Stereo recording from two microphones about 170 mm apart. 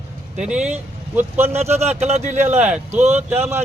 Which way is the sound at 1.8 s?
40° right (ahead or behind).